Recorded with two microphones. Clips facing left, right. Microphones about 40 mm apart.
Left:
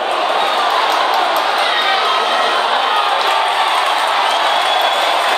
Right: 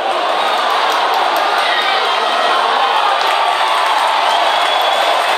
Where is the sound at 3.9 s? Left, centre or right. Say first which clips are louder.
Right 1 dB; centre.